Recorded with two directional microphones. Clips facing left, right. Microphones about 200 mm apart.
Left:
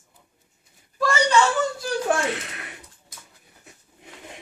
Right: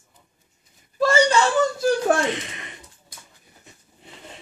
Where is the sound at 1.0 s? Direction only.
30° right (ahead or behind).